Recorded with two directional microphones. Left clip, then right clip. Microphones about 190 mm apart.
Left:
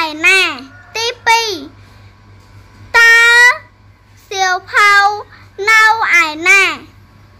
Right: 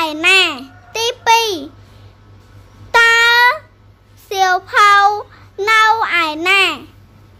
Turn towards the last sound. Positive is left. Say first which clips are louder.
# left 3 dB
turn(degrees=-20)  # may be behind; listen again after turning